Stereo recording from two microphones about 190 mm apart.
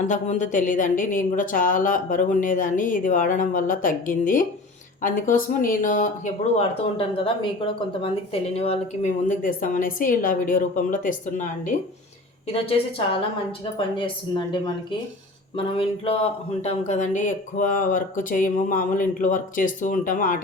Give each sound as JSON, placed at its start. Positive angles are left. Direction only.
{"t": 0.1, "sound": "speech", "side_deg": 40}
{"t": 13.7, "sound": "a woman's voice", "side_deg": 25}
{"t": 15.5, "sound": "speech", "side_deg": 30}